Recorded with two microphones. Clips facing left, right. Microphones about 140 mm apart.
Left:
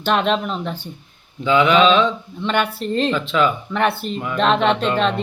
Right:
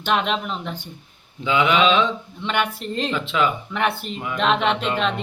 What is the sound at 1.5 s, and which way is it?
A woman's voice, 20° right (ahead or behind).